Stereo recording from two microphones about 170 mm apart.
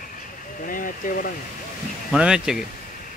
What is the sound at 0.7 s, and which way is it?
Speech, 55° left (ahead or behind).